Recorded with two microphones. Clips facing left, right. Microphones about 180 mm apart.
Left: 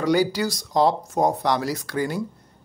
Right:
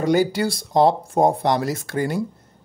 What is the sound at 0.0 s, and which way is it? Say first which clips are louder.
Speech: right 2 dB; 50° right (ahead or behind).